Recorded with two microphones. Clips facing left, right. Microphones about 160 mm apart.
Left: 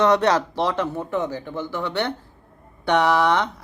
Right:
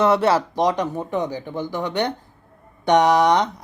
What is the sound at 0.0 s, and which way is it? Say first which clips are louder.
Speech: right 1 dB; 5° right (ahead or behind).